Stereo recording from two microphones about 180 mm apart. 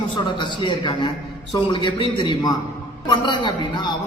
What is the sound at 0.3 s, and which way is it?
A man's voice, 25° left (ahead or behind).